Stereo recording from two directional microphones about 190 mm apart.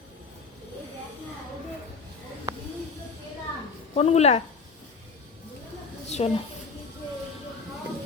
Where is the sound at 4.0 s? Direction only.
35° left (ahead or behind).